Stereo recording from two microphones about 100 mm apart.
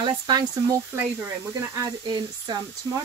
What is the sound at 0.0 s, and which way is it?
Speech, 45° right (ahead or behind).